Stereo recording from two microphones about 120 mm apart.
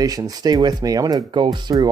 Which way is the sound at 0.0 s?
30° right (ahead or behind).